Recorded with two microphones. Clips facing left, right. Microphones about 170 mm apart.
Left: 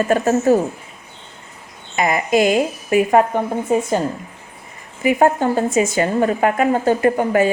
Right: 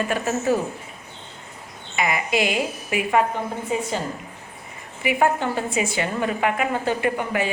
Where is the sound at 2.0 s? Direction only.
45° left (ahead or behind).